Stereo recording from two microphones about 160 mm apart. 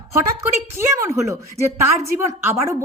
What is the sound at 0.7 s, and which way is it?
A woman's voice, 15° right (ahead or behind).